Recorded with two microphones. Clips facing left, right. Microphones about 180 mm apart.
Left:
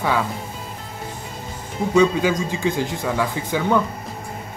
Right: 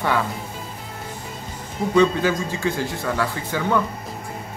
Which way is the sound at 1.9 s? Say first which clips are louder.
Left 1 dB; 10° left (ahead or behind).